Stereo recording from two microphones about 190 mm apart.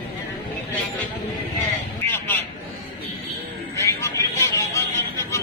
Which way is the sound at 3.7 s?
15° left (ahead or behind).